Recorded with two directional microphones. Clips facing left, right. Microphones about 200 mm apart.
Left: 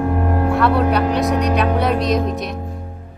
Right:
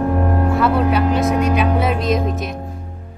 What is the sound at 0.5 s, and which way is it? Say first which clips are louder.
Speech: left 1 dB; centre (ahead or behind).